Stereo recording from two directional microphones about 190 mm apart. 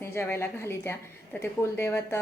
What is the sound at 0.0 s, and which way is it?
A woman's voice, 15° left (ahead or behind).